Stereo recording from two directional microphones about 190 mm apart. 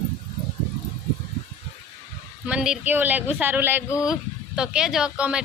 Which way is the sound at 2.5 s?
5° right (ahead or behind).